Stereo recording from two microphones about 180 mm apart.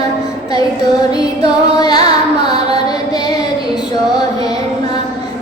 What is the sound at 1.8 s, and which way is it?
Music, 20° left (ahead or behind).